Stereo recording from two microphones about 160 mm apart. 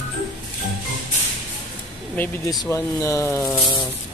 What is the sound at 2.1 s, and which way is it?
Speech, 10° left (ahead or behind).